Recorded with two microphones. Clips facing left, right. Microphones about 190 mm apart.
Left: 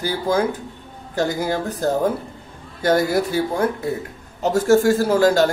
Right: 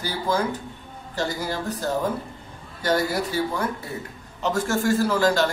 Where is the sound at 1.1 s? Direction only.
50° left (ahead or behind).